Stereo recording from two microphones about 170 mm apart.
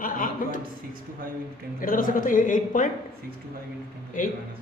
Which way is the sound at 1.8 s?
55° left (ahead or behind).